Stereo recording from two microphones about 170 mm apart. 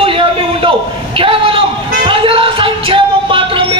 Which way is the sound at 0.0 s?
30° right (ahead or behind).